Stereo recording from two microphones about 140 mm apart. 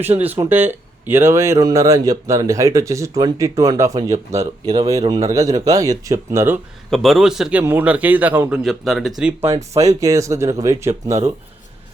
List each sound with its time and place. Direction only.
0.0 s a man's voice: 15° right (ahead or behind)
6.9 s speech: centre (ahead or behind)
7.6 s a man's voice: 15° right (ahead or behind)
8.6 s speech: centre (ahead or behind)
9.6 s speech: 20° right (ahead or behind)